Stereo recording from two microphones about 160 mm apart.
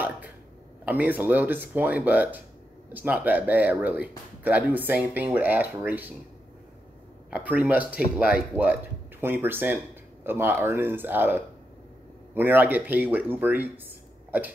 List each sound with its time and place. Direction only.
0.8 s speech: 10° right (ahead or behind)
7.2 s speech: 10° right (ahead or behind)